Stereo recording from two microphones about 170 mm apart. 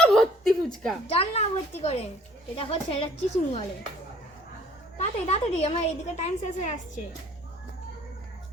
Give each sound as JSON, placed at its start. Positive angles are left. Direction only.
{"t": 0.0, "sound": "a sound", "side_deg": 0}
{"t": 1.0, "sound": "a woman's voice", "side_deg": 35}
{"t": 4.9, "sound": "a woman's voice", "side_deg": 40}